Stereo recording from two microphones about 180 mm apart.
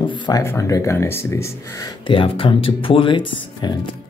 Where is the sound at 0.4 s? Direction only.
15° left (ahead or behind).